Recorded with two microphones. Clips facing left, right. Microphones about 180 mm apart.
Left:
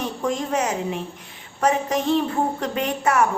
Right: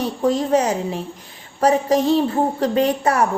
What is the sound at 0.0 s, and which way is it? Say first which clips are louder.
A woman's voice: right 6 dB; 35° right (ahead or behind).